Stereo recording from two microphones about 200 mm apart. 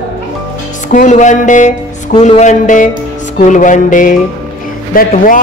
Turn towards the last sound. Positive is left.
turn(degrees=45)  # may be behind; listen again after turning